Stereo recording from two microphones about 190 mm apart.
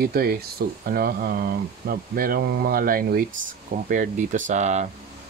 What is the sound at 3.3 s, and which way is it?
Speech, 85° right.